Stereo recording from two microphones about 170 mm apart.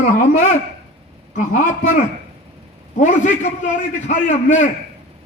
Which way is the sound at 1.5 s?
45° left (ahead or behind).